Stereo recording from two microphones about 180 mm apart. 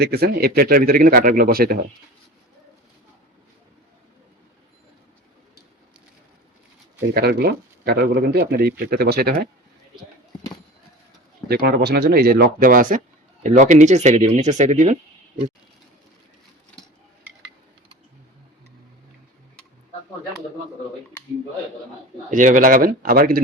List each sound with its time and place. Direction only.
0.0 s speech: 60° right (ahead or behind)
7.1 s speech: 60° right (ahead or behind)
11.4 s speech: 60° right (ahead or behind); by 14.9 s 40° right (ahead or behind)
22.3 s speech: 45° right (ahead or behind)